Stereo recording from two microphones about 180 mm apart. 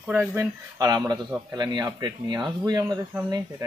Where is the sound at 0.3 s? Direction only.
15° right (ahead or behind).